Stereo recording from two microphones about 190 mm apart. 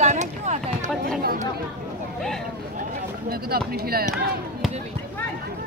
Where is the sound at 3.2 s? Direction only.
55° right (ahead or behind).